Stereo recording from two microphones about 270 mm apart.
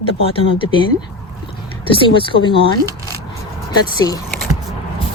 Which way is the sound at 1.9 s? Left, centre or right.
Centre.